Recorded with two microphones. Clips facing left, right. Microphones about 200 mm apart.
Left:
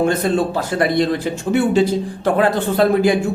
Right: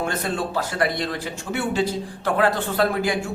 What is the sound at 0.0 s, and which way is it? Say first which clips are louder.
Speech: left 9 dB; 25° left (ahead or behind).